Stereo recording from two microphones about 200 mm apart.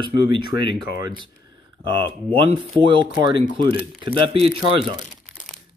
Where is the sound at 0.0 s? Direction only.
25° right (ahead or behind).